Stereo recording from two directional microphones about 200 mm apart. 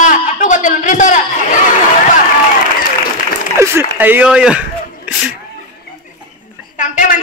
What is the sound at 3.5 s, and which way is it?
Speech, 10° right (ahead or behind).